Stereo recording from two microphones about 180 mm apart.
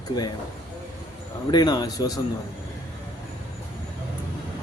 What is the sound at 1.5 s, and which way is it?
Speech, 25° left (ahead or behind).